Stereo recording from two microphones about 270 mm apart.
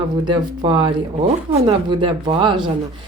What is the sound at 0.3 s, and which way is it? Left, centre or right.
A woman's voice, centre.